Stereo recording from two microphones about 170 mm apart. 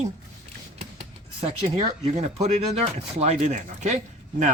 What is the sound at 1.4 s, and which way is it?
Speech, 35° right (ahead or behind).